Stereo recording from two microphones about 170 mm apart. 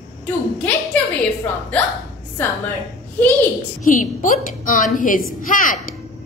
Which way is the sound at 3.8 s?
50° left (ahead or behind).